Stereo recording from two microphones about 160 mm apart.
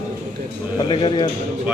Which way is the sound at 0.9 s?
30° left (ahead or behind).